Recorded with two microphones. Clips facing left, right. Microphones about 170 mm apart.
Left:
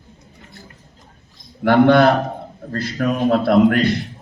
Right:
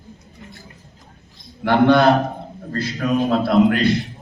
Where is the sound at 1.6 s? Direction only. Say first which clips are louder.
Left 2 dB; 50° left (ahead or behind).